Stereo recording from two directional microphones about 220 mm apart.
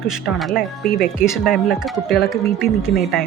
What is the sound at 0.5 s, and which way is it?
Speech, 40° left (ahead or behind).